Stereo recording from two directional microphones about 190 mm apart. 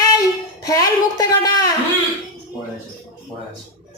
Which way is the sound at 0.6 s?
20° left (ahead or behind).